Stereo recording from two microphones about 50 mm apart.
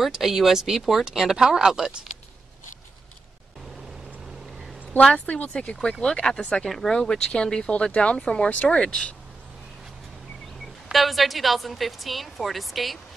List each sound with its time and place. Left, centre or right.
0.0 s a woman's voice: centre
5.2 s speech: left
10.6 s a woman's voice: centre